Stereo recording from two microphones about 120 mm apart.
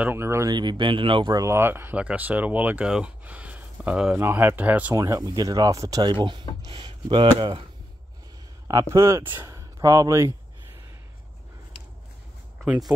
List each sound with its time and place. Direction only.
0.0 s speech: 20° right (ahead or behind)
0.5 s speech: 40° right (ahead or behind)
1.3 s speech: 25° right (ahead or behind)
4.9 s speech: 30° right (ahead or behind)
8.6 s speech: 25° right (ahead or behind)
12.6 s speech: 5° right (ahead or behind)